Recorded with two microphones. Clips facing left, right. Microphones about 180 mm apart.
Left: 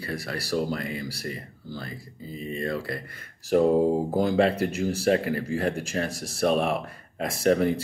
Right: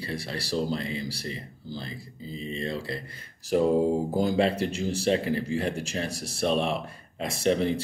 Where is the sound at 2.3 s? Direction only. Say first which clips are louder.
Left 2 dB; 50° left (ahead or behind).